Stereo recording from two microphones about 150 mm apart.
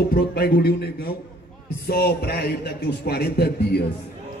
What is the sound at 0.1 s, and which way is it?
Speech, 85° left.